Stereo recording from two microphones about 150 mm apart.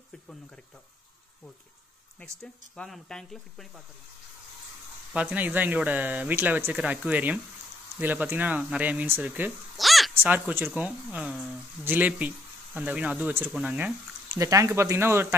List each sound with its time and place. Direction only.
2.1 s speech: 5° left (ahead or behind)
5.1 s speech: 10° right (ahead or behind)
10.1 s speech: 10° right (ahead or behind)
14.4 s speech: 20° right (ahead or behind)